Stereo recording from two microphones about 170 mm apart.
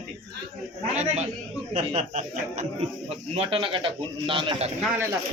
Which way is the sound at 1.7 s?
40° right (ahead or behind).